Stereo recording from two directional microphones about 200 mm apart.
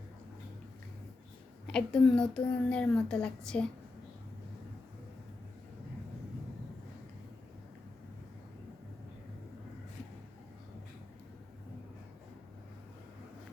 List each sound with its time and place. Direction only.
1.6 s a woman's voice: 5° left (ahead or behind)